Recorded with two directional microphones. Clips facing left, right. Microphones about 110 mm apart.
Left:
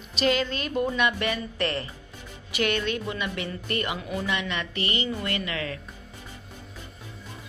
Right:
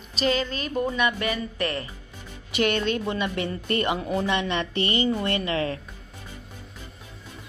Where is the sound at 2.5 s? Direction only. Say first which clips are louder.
Right 3 dB; 25° right (ahead or behind).